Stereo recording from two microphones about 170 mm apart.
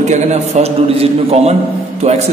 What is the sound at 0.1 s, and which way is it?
A man's voice, 40° right (ahead or behind).